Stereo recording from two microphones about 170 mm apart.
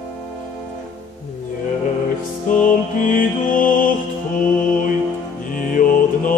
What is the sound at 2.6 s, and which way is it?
Mantra, 50° left (ahead or behind).